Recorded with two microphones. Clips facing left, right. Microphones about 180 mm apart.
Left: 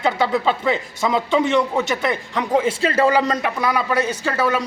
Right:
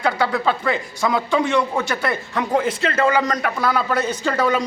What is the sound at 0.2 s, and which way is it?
Speech, 20° left (ahead or behind).